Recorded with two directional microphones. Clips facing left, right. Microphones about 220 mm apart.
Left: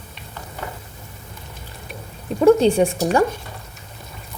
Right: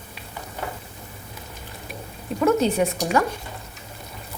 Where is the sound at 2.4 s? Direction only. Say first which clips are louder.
Left 6 dB; 30° left (ahead or behind).